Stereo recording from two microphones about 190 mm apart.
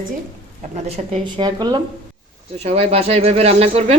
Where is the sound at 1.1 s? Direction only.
25° right (ahead or behind).